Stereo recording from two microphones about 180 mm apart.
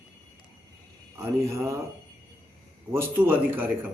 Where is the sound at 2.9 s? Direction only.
10° right (ahead or behind).